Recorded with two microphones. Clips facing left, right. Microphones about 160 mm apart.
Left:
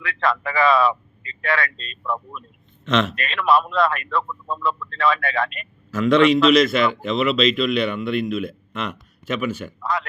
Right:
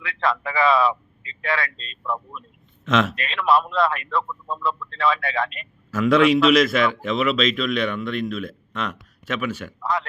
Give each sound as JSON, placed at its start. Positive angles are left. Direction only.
{"t": 0.0, "sound": "speech", "side_deg": 0}
{"t": 1.7, "sound": "speech", "side_deg": 55}
{"t": 2.0, "sound": "speech", "side_deg": 0}